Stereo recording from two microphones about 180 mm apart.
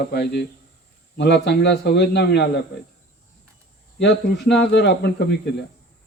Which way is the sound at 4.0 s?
70° left (ahead or behind).